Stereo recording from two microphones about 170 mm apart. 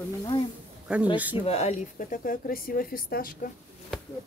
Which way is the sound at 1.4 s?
40° left (ahead or behind).